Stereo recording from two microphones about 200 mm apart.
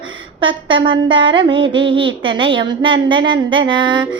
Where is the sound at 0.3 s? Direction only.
25° right (ahead or behind).